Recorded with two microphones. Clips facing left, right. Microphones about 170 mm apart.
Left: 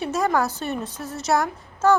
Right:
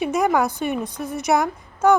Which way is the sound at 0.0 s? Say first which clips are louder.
Right 3 dB; 15° right (ahead or behind).